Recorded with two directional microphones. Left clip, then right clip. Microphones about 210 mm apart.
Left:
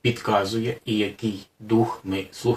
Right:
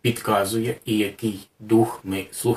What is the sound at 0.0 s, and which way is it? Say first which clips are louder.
Speech: right 1 dB; 10° right (ahead or behind).